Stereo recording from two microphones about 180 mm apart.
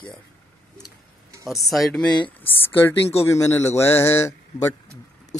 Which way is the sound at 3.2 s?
15° left (ahead or behind).